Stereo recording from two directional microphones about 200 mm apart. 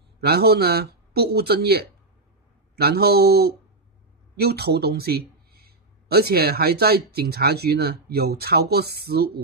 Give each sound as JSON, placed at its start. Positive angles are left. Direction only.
{"t": 0.2, "sound": "speech", "side_deg": -55}